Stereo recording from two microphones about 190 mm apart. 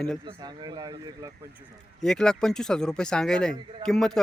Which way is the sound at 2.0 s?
5° left (ahead or behind).